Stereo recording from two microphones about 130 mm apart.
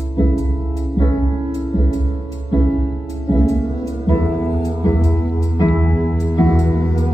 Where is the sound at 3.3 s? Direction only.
25° left (ahead or behind).